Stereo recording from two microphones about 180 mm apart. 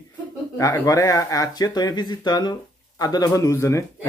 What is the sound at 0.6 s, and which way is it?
A man's voice, 20° left (ahead or behind).